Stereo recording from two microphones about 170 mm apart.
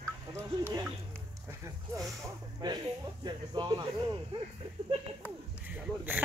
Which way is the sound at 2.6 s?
25° right (ahead or behind).